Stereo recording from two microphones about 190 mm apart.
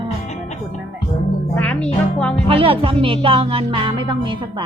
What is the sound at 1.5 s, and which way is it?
Music, 5° left (ahead or behind).